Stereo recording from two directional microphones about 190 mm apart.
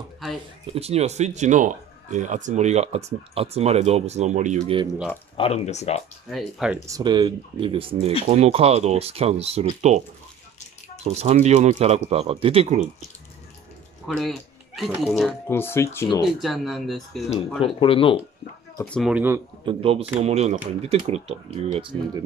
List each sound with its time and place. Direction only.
0.7 s speech: 35° right (ahead or behind)
5.4 s speech: 35° left (ahead or behind)
6.3 s speech: 5° right (ahead or behind)
6.9 s speech: 20° right (ahead or behind)
11.1 s speech: 35° right (ahead or behind)
14.0 s speech: centre (ahead or behind)
15.4 s speech: 10° left (ahead or behind)
16.3 s speech: centre (ahead or behind)
17.7 s speech: 30° left (ahead or behind)
18.9 s speech: centre (ahead or behind)
19.6 s speech: 30° right (ahead or behind)